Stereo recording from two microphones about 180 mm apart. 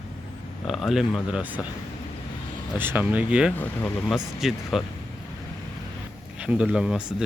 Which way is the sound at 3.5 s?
10° left (ahead or behind).